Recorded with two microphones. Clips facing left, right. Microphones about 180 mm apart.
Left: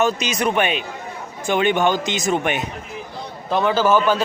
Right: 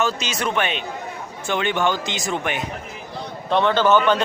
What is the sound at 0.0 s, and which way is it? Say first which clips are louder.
A man's voice: left 4 dB; 15° left (ahead or behind).